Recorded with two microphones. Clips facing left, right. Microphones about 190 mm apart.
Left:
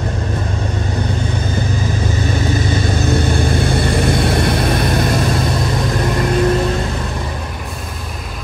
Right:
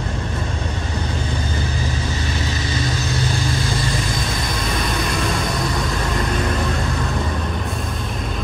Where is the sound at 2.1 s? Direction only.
50° left (ahead or behind).